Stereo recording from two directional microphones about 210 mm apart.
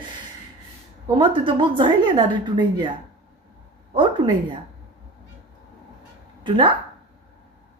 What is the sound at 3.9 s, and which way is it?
Speech, 25° right (ahead or behind).